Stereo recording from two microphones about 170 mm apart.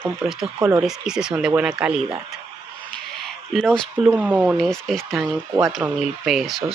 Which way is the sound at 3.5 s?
Centre (ahead or behind).